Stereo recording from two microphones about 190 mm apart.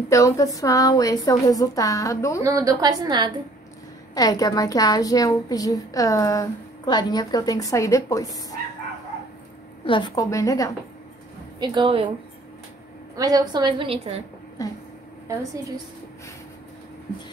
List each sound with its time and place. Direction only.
0.1 s a woman's voice: 15° left (ahead or behind)
2.4 s a woman's voice: 20° right (ahead or behind)
4.1 s a woman's voice: 20° left (ahead or behind)
9.8 s a woman's voice: 25° left (ahead or behind)
11.6 s a woman's voice: 25° right (ahead or behind)
13.1 s a woman's voice: 20° right (ahead or behind)
14.6 s a woman's voice: 20° left (ahead or behind)